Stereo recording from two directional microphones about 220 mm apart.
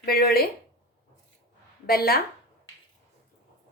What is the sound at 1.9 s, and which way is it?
Speech, 45° left (ahead or behind).